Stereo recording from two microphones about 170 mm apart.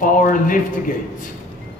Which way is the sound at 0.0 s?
55° left (ahead or behind).